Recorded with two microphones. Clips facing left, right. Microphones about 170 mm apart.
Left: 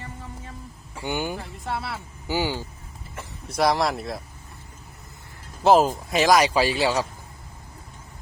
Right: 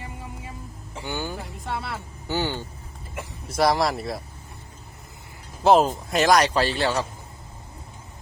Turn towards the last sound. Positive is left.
turn(degrees=5)  # may be behind; listen again after turning